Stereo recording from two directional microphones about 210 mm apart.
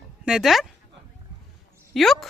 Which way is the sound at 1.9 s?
Centre (ahead or behind).